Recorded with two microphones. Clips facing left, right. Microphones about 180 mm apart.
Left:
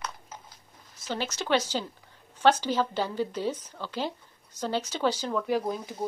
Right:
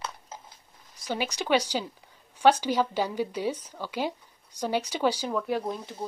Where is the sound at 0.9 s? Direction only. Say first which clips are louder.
Right 2 dB; 15° right (ahead or behind).